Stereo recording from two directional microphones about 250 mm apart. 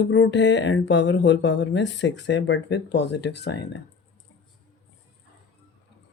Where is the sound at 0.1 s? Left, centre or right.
Left.